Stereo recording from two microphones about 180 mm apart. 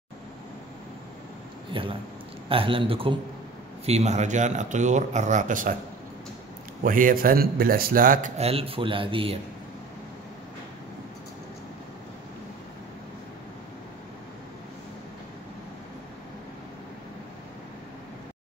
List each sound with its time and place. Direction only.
1.7 s a man's voice: 30° right (ahead or behind); by 5.8 s 50° right (ahead or behind)
6.8 s a man's voice: 50° right (ahead or behind)
8.4 s a man's voice: 35° right (ahead or behind)